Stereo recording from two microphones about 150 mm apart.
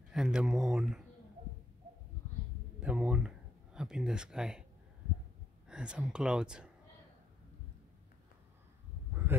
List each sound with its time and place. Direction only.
0.1 s speech: 5° right (ahead or behind)
2.8 s speech: 5° right (ahead or behind)
5.7 s speech: 5° right (ahead or behind)
9.1 s a sound: 15° right (ahead or behind)